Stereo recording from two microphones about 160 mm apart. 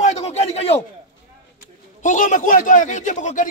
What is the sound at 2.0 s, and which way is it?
A man's voice, 50° left (ahead or behind).